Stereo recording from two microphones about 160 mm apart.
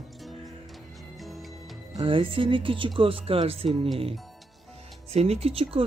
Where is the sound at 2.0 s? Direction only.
35° right (ahead or behind).